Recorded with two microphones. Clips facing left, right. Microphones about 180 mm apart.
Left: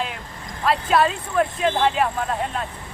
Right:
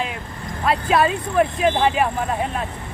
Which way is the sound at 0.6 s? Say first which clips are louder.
Right 1 dB; 5° right (ahead or behind).